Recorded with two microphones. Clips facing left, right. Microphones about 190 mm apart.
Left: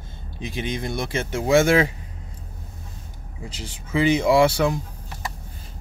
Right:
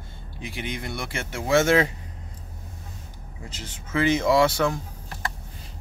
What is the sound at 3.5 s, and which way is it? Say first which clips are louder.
Speech: left 3 dB; 10° left (ahead or behind).